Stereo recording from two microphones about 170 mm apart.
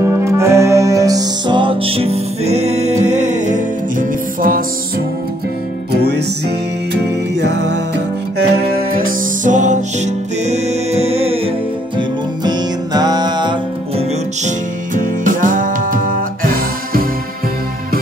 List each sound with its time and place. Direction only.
0.0 s music: 15° right (ahead or behind); by 3.6 s 45° right (ahead or behind)
4.4 s music: 55° right (ahead or behind)
5.9 s music: 75° right (ahead or behind)
8.4 s music: 65° right (ahead or behind); by 11.5 s 35° right (ahead or behind)
12.0 s music: 25° right (ahead or behind)
15.2 s music: 50° right (ahead or behind)